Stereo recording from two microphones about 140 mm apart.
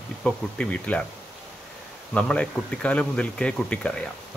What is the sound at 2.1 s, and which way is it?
Speech, 10° left (ahead or behind).